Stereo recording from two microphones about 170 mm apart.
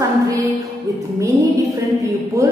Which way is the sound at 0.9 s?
20° right (ahead or behind).